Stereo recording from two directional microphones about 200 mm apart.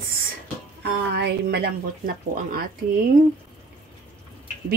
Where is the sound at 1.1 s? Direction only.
55° right (ahead or behind).